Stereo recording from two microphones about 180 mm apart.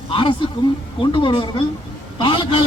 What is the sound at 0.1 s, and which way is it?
Speech, 25° left (ahead or behind).